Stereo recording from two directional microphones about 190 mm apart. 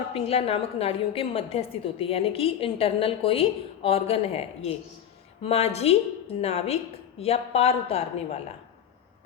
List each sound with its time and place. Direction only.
0.1 s a woman's voice: 30° left (ahead or behind)